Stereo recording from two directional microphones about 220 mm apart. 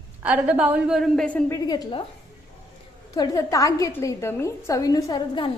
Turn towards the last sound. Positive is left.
turn(degrees=20)  # may be behind; listen again after turning